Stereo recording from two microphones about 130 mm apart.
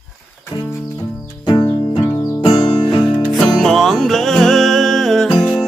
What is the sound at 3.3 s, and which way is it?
Music, centre (ahead or behind).